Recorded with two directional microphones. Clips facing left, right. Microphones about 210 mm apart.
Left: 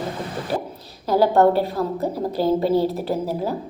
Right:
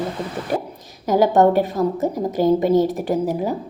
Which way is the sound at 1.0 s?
15° right (ahead or behind).